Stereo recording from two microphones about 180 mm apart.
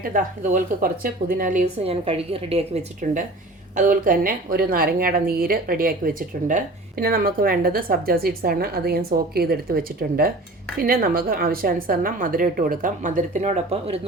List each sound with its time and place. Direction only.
0.0 s a woman's voice: 50° right (ahead or behind); by 2.8 s 35° right (ahead or behind)
3.0 s a woman's voice: 45° right (ahead or behind)